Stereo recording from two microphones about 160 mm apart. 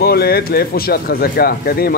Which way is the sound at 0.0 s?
75° left (ahead or behind).